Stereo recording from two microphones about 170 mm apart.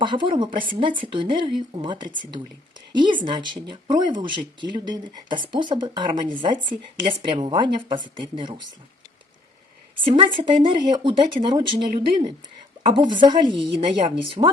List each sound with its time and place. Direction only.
0.0 s speech: 30° right (ahead or behind)
10.0 s speech: 30° right (ahead or behind)